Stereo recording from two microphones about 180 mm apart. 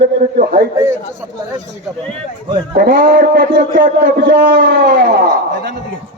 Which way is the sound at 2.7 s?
55° right (ahead or behind).